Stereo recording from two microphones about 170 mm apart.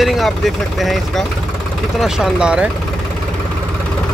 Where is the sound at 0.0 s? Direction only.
Centre (ahead or behind).